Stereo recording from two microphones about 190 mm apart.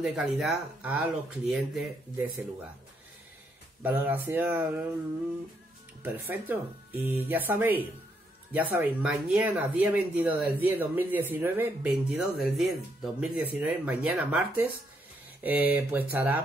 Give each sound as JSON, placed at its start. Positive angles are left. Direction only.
{"t": 0.0, "sound": "speech", "side_deg": 0}
{"t": 3.8, "sound": "speech", "side_deg": -10}
{"t": 6.0, "sound": "speech", "side_deg": -10}